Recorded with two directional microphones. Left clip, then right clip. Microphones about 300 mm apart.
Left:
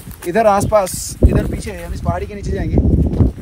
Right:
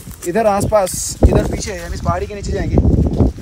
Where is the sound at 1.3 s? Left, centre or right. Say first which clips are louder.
Right 4 dB; right.